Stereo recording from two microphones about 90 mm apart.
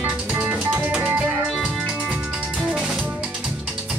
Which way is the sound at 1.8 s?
15° right (ahead or behind).